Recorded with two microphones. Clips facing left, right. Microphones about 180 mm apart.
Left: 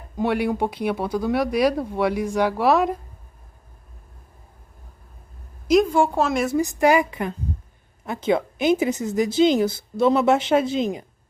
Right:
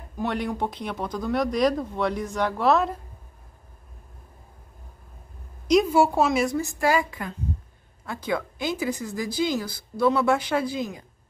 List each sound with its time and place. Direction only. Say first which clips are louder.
0.2 s speech: left 5 dB; 10° left (ahead or behind)
5.7 s a woman's voice: left 2 dB; 5° right (ahead or behind)
6.5 s a woman's voice: left 5 dB; 15° left (ahead or behind)